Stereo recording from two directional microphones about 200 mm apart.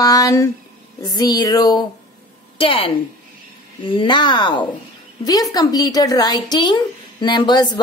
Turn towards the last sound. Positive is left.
turn(degrees=20)  # may be behind; listen again after turning